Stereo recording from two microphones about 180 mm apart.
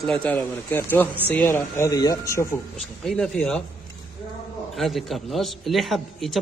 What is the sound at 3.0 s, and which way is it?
Speech, 5° left (ahead or behind).